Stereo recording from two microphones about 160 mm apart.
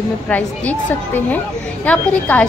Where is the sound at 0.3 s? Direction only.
10° left (ahead or behind).